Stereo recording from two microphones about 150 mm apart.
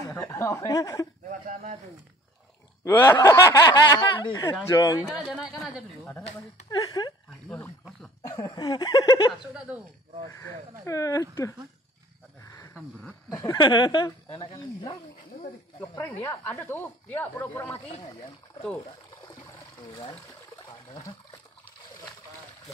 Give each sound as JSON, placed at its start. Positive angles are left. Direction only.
{"t": 0.1, "sound": "speech", "side_deg": 20}
{"t": 1.3, "sound": "speech", "side_deg": -60}
{"t": 2.8, "sound": "speech", "side_deg": 20}
{"t": 5.1, "sound": "speech", "side_deg": -5}
{"t": 6.7, "sound": "speech", "side_deg": 30}
{"t": 8.2, "sound": "a sound", "side_deg": 15}
{"t": 8.5, "sound": "speech", "side_deg": 30}
{"t": 9.5, "sound": "speech", "side_deg": -5}
{"t": 10.3, "sound": "speech", "side_deg": 20}
{"t": 12.4, "sound": "a sound", "side_deg": 20}
{"t": 13.6, "sound": "speech", "side_deg": 30}
{"t": 15.8, "sound": "speech", "side_deg": 20}
{"t": 19.2, "sound": "water", "side_deg": 35}